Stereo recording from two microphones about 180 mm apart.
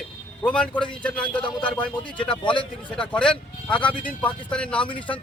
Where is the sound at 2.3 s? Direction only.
25° left (ahead or behind).